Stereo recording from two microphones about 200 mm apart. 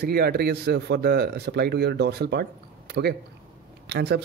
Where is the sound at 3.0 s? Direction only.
75° right (ahead or behind).